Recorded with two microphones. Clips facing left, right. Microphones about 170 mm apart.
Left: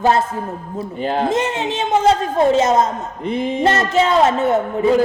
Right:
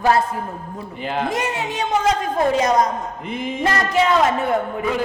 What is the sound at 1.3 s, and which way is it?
A woman's voice, 20° left (ahead or behind).